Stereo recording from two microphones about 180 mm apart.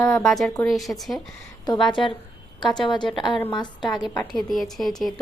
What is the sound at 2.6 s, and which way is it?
A woman's voice, 25° left (ahead or behind).